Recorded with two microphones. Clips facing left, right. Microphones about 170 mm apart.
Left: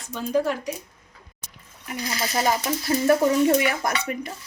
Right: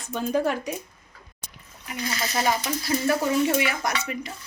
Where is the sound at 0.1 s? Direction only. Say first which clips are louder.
Left 1 dB; 55° right (ahead or behind).